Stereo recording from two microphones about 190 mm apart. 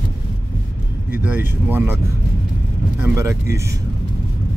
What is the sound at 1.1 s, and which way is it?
Speech, 10° right (ahead or behind).